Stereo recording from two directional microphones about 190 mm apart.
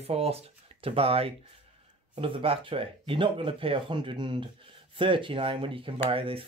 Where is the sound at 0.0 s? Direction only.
30° right (ahead or behind).